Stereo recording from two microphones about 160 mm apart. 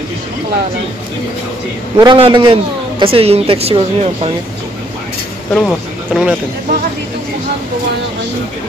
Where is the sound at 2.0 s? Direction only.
30° right (ahead or behind).